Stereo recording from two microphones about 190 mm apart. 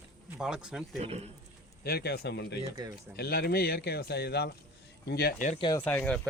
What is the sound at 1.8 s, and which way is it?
Speech, 55° left (ahead or behind).